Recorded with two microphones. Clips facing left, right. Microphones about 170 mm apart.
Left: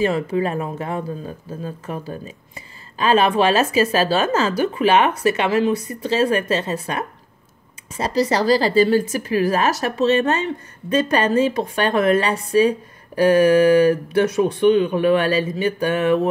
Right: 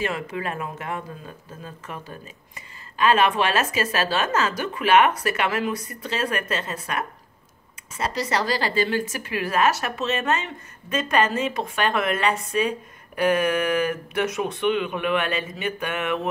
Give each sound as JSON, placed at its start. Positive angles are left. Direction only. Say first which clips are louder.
{"t": 0.0, "sound": "speech", "louder": "left 8 dB", "side_deg": 30}